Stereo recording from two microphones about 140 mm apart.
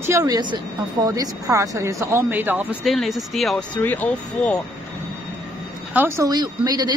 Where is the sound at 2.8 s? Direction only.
Centre (ahead or behind).